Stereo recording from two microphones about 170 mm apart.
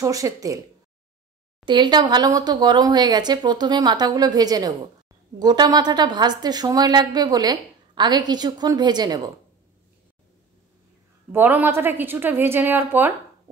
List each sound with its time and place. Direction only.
0.0 s a woman's voice: 20° right (ahead or behind)
1.7 s a woman's voice: 25° right (ahead or behind)
11.3 s a woman's voice: 10° right (ahead or behind)